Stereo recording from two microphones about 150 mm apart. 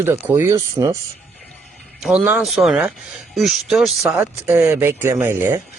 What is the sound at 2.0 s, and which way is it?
Speech, 5° right (ahead or behind).